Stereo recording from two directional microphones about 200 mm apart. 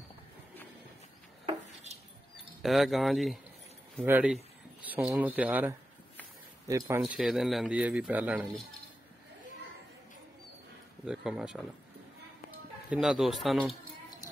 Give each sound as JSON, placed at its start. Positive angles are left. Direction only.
{"t": 1.4, "sound": "a sound", "side_deg": -30}
{"t": 2.3, "sound": "speech", "side_deg": 0}
{"t": 7.2, "sound": "speech", "side_deg": 0}
{"t": 11.1, "sound": "speech", "side_deg": -5}
{"t": 12.9, "sound": "speech", "side_deg": -5}